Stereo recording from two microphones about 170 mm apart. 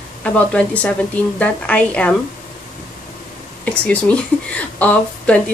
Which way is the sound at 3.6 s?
10° left (ahead or behind).